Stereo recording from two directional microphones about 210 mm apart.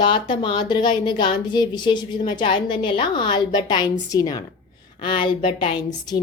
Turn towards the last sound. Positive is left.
turn(degrees=20)  # may be behind; listen again after turning